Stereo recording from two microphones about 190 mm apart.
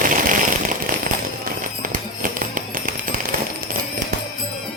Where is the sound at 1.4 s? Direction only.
45° right (ahead or behind).